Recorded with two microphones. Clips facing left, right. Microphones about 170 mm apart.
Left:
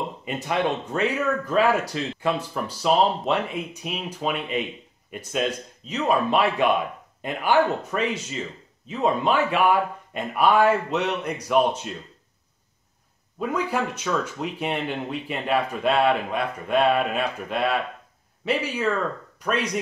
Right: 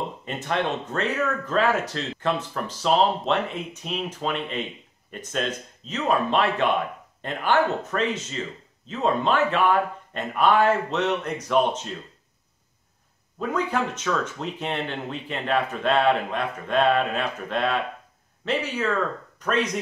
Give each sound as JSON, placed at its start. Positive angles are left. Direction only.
{"t": 0.2, "sound": "speech", "side_deg": 10}
{"t": 13.4, "sound": "speech", "side_deg": 10}